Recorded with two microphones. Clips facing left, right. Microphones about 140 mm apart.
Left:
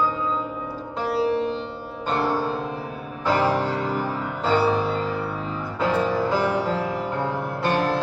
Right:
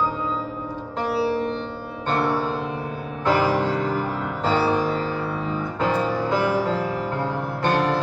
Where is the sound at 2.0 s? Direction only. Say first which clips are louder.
Right 1 dB; centre (ahead or behind).